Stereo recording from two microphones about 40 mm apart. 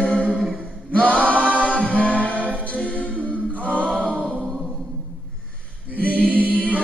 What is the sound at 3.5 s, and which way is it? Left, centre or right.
A capella, left.